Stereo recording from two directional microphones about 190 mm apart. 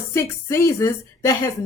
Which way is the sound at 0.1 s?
15° left (ahead or behind).